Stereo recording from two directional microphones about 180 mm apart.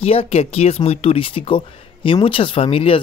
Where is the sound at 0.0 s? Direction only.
35° left (ahead or behind).